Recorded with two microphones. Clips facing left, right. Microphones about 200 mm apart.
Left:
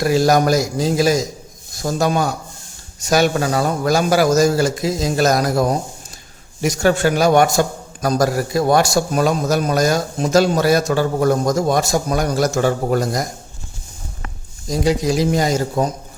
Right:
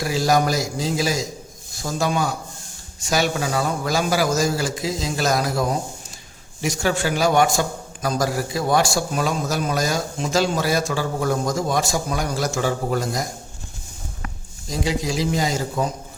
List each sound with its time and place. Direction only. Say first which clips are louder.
0.0 s a man's voice: left 5 dB; 50° left (ahead or behind)
14.7 s a man's voice: left 6 dB; 40° left (ahead or behind)